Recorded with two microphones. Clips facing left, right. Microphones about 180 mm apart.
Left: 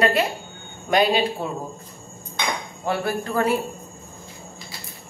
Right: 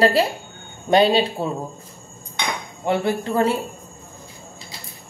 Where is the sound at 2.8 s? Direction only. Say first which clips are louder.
Right 4 dB; 20° right (ahead or behind).